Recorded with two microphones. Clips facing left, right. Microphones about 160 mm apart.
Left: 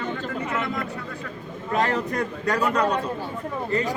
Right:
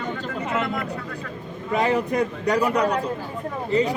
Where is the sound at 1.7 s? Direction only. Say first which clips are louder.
Right 3 dB; 15° right (ahead or behind).